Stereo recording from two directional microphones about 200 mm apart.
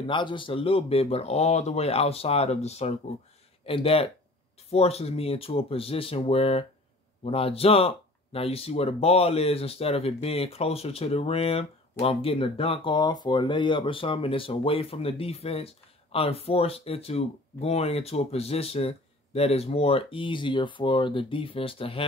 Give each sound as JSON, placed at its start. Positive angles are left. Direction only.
{"t": 0.0, "sound": "speech", "side_deg": 25}